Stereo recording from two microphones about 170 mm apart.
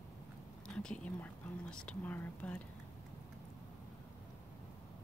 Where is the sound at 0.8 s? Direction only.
5° left (ahead or behind).